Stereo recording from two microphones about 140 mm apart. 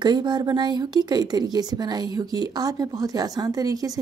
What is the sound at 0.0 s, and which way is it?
Speech, 30° right (ahead or behind).